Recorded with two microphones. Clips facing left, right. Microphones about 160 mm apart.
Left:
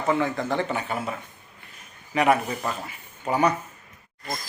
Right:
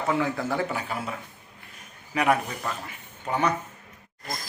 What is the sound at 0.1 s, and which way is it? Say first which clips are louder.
Speech: left 3 dB; 5° right (ahead or behind).